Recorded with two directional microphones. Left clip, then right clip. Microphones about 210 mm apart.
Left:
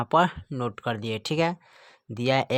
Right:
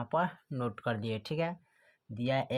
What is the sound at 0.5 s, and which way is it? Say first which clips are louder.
Speech: left 5 dB; 30° left (ahead or behind).